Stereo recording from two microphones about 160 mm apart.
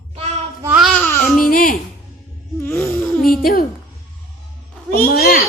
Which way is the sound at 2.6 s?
15° left (ahead or behind).